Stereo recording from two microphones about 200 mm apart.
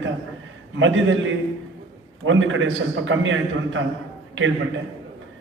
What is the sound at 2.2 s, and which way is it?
A man's voice, 70° right (ahead or behind).